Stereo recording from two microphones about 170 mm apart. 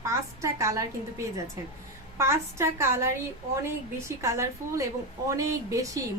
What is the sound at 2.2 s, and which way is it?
Speech, 15° right (ahead or behind).